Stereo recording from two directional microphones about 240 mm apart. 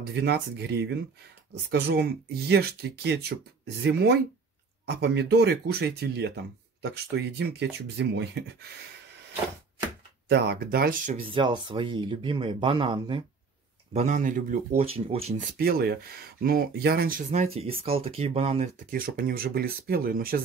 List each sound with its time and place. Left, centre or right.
0.1 s speech: right
10.2 s speech: right
11.1 s speech: right
13.9 s speech: right
18.9 s speech: right